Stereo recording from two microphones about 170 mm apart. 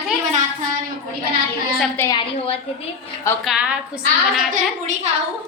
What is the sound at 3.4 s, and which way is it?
Speech, 5° right (ahead or behind).